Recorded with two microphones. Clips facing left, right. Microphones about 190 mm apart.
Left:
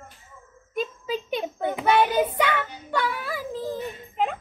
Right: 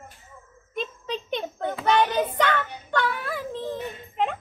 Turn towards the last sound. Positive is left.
turn(degrees=5)  # may be behind; listen again after turning